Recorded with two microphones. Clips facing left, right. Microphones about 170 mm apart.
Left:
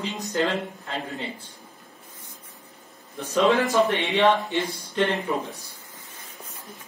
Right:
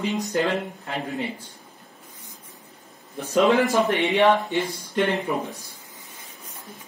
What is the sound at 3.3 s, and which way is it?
Speech, 15° right (ahead or behind).